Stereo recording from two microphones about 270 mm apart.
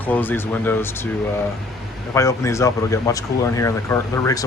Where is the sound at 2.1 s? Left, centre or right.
Centre.